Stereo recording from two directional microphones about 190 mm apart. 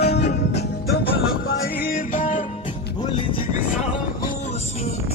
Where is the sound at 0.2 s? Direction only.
35° left (ahead or behind).